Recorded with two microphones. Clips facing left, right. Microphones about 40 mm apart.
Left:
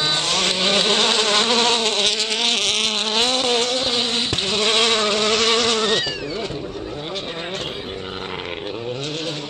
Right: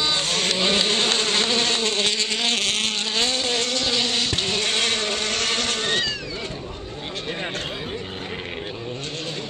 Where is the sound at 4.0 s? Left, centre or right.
Left.